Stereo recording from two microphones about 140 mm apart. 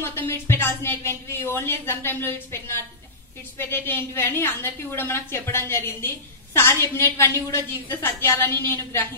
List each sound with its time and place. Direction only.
0.0 s a woman's voice: 20° left (ahead or behind)